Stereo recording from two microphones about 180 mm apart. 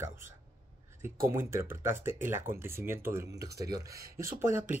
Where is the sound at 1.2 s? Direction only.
15° right (ahead or behind).